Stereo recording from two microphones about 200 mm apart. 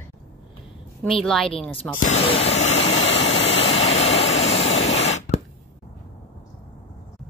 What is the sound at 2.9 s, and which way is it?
Vehicle, 70° left (ahead or behind).